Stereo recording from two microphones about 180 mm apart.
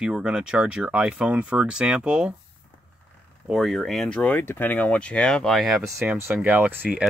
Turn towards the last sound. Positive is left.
turn(degrees=-10)  # may be behind; listen again after turning